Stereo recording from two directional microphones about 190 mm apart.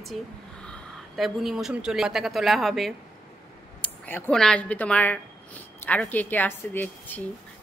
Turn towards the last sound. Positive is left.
turn(degrees=10)  # may be behind; listen again after turning